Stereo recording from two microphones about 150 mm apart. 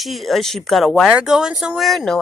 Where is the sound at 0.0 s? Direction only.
Centre (ahead or behind).